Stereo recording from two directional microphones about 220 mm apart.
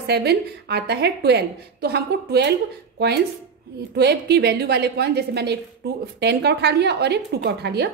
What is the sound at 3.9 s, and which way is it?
A woman's voice, 50° right (ahead or behind).